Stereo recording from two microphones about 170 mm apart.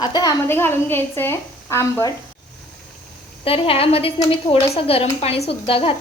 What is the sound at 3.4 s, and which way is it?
A woman's voice, 35° left (ahead or behind).